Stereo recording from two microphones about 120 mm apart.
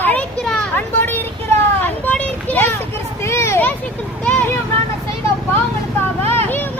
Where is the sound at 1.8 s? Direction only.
15° left (ahead or behind).